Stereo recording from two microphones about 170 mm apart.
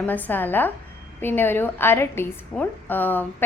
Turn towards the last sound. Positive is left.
turn(degrees=10)  # may be behind; listen again after turning